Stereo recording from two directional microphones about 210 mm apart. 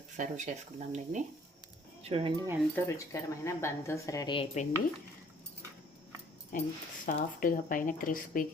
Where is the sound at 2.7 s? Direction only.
15° left (ahead or behind); by 4.7 s 30° left (ahead or behind).